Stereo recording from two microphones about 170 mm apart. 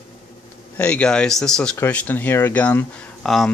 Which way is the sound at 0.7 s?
5° left (ahead or behind).